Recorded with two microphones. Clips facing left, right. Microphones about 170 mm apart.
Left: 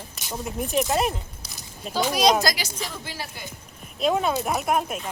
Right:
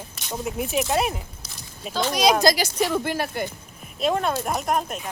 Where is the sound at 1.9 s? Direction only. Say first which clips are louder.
Even; 10° left (ahead or behind).